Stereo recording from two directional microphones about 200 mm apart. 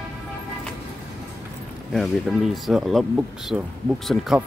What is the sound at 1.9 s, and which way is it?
Speech, centre (ahead or behind).